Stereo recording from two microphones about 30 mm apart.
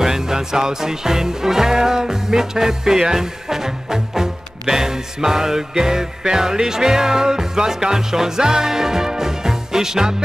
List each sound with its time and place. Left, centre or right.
0.0 s music: centre